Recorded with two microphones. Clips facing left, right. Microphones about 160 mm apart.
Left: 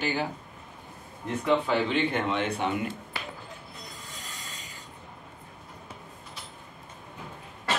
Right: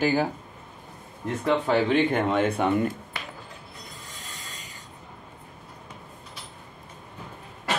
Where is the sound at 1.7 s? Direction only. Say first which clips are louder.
Right 4 dB; 45° right (ahead or behind).